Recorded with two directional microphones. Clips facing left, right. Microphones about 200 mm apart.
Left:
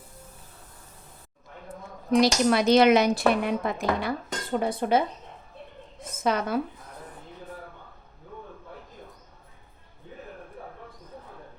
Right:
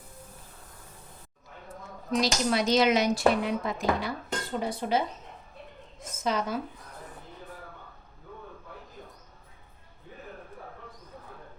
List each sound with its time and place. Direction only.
2.0 s speech: 60° left (ahead or behind)
6.2 s speech: 60° left (ahead or behind)